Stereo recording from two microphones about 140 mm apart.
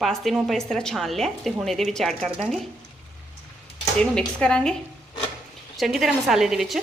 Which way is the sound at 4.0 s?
5° left (ahead or behind).